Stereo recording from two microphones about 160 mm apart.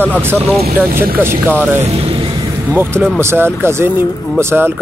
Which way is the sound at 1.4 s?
10° right (ahead or behind).